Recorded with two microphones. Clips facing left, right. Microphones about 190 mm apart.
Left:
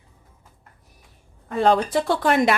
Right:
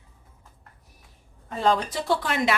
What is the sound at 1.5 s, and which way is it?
Speech, 60° left (ahead or behind).